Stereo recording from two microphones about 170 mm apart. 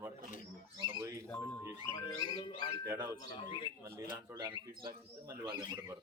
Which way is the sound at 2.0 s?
25° left (ahead or behind).